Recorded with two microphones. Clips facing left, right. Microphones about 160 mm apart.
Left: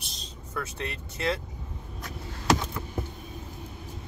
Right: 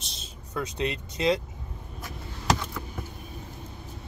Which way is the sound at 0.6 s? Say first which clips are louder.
Right 5 dB; 15° right (ahead or behind).